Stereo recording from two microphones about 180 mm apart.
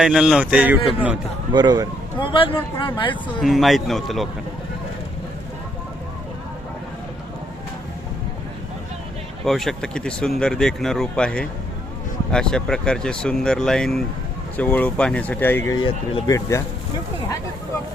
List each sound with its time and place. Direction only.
0.0 s speech: 5° right (ahead or behind)
1.5 s speech: 25° right (ahead or behind)
2.3 s speech: 30° left (ahead or behind)
3.4 s speech: centre (ahead or behind)
9.4 s speech: centre (ahead or behind)
15.8 s speech: 25° left (ahead or behind)